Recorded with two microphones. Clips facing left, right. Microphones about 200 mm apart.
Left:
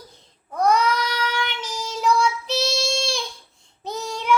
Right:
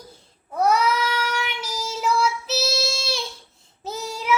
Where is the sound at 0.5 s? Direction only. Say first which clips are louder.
Even; 5° right (ahead or behind).